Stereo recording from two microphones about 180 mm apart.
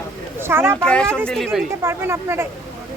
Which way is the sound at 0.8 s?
5° left (ahead or behind).